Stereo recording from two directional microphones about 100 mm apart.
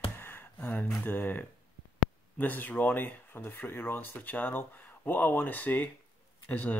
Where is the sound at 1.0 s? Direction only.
20° left (ahead or behind).